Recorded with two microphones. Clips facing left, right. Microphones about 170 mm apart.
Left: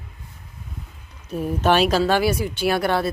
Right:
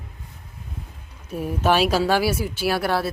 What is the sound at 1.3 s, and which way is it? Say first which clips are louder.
Speech: left 1 dB; 10° right (ahead or behind).